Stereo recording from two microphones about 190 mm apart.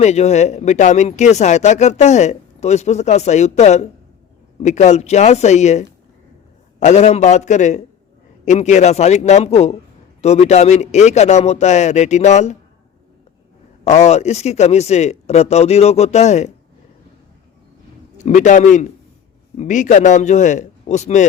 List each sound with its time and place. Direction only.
0.0 s speech: 35° left (ahead or behind)
13.8 s speech: 35° left (ahead or behind)
18.2 s speech: 40° left (ahead or behind)